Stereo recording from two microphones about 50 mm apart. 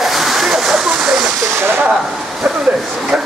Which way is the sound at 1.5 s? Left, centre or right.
Right.